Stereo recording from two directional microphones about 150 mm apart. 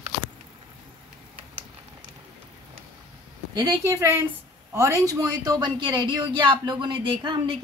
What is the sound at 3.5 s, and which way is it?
A woman's voice, 25° right (ahead or behind).